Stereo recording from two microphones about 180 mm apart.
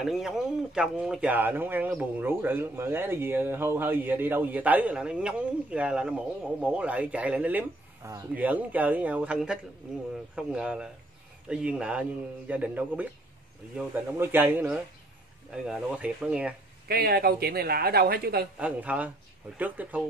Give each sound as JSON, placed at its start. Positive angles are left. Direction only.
{"t": 0.0, "sound": "speech", "side_deg": 0}
{"t": 16.8, "sound": "speech", "side_deg": -60}
{"t": 18.6, "sound": "speech", "side_deg": -10}